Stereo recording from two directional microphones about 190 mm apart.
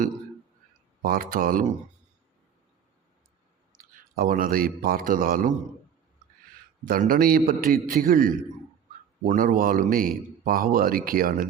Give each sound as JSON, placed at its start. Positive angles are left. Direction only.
{"t": 1.0, "sound": "a man's voice", "side_deg": -50}
{"t": 4.1, "sound": "a man's voice", "side_deg": -50}
{"t": 6.8, "sound": "a man's voice", "side_deg": -50}